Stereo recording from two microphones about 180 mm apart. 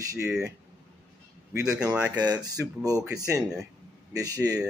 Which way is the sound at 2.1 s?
20° right (ahead or behind).